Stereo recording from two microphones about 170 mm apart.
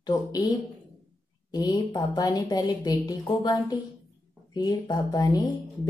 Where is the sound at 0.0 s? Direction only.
20° left (ahead or behind).